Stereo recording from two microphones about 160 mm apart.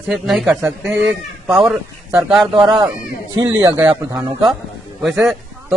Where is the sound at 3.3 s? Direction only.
25° right (ahead or behind).